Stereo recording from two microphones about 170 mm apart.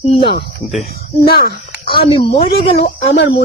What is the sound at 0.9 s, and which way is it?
Speech, 65° left (ahead or behind).